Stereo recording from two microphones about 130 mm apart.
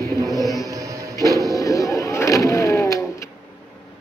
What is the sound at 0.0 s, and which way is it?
Music, 25° left (ahead or behind).